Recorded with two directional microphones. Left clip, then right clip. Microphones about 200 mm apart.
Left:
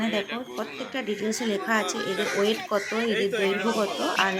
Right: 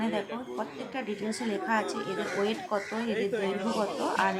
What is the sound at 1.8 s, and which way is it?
Speech, 20° right (ahead or behind).